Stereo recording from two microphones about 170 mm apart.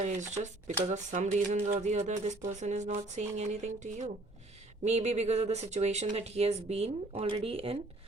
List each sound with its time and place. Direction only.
0.4 s speech: 45° right (ahead or behind)